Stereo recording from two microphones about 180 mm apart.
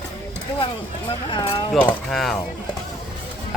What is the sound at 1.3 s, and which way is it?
Speech, 25° left (ahead or behind).